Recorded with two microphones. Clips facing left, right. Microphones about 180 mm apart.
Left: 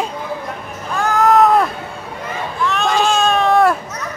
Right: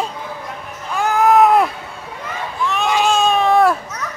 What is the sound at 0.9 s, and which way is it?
Cat, 15° right (ahead or behind).